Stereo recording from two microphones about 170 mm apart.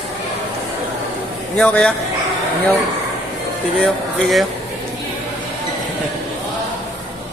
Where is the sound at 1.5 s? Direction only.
5° left (ahead or behind).